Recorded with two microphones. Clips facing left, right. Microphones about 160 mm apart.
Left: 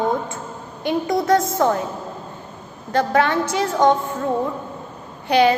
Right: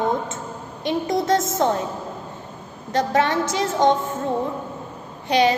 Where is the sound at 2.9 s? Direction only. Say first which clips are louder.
Left 2 dB; 25° right (ahead or behind).